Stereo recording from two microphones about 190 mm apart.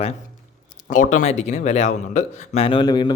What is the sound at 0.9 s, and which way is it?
A man's voice, 40° left (ahead or behind).